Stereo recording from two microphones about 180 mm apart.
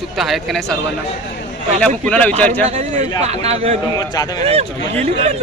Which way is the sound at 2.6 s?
40° right (ahead or behind).